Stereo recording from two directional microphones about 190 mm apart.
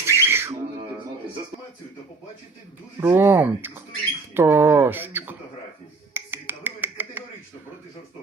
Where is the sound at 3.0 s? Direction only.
15° right (ahead or behind).